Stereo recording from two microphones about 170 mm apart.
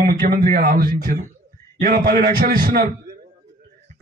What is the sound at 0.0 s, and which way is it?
A man's voice, 55° right (ahead or behind).